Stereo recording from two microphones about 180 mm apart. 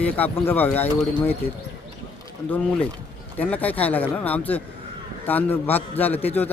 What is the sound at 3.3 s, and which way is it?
Speech, 10° left (ahead or behind).